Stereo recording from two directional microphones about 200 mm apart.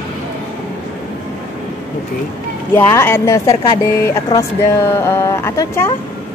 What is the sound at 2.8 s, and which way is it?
Speech, 10° left (ahead or behind).